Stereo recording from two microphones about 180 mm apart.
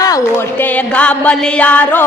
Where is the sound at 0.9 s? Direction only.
5° left (ahead or behind).